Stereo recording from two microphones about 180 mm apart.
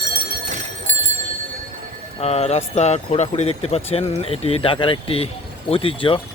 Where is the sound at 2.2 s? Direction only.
35° left (ahead or behind).